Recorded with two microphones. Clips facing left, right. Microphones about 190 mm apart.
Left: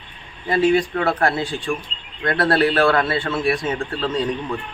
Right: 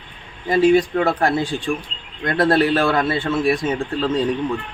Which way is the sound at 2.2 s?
20° right (ahead or behind).